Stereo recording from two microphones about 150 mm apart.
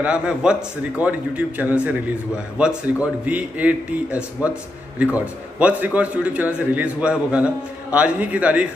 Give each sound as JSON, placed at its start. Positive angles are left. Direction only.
{"t": 0.0, "sound": "a man's voice", "side_deg": -5}